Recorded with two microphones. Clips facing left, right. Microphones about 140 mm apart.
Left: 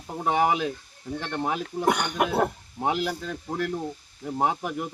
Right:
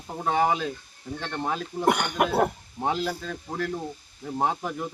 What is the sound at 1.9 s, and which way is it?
Speech, 5° right (ahead or behind).